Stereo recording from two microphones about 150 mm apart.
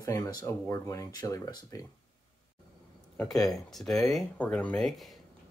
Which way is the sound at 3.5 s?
Centre (ahead or behind).